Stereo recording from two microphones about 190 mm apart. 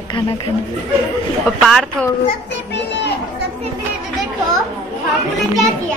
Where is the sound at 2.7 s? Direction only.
65° left (ahead or behind).